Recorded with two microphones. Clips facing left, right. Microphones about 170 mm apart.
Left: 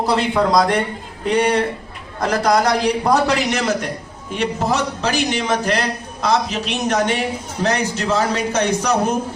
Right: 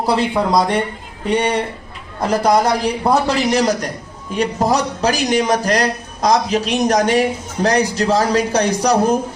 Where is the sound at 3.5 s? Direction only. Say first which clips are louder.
Right 4 dB; 35° right (ahead or behind).